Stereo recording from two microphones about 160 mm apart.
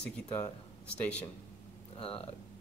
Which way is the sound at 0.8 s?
5° left (ahead or behind).